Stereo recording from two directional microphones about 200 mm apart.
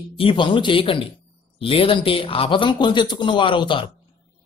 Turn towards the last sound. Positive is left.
turn(degrees=25)  # may be behind; listen again after turning